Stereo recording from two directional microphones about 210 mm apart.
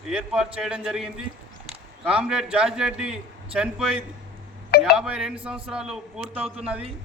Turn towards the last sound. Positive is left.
turn(degrees=-5)  # may be behind; listen again after turning